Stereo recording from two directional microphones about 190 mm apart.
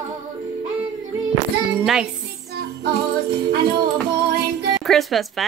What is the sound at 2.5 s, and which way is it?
Music, 55° right (ahead or behind).